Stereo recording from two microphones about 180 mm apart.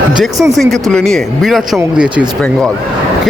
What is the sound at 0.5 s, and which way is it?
Speech, centre (ahead or behind).